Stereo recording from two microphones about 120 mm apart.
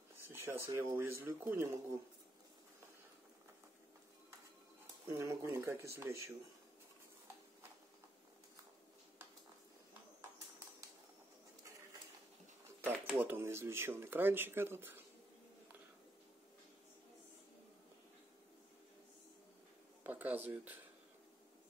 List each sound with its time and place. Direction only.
0.3 s speech: 20° right (ahead or behind)
5.0 s speech: 25° right (ahead or behind)
12.8 s speech: 15° right (ahead or behind)
20.0 s a sound: 15° right (ahead or behind)